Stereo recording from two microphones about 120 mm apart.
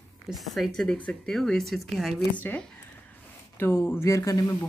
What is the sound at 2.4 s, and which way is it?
A woman's voice, 15° left (ahead or behind).